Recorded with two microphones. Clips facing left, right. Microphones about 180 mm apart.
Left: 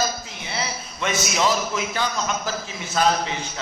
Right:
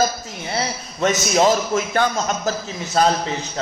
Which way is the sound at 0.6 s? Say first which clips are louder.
Right 6 dB; 45° right (ahead or behind).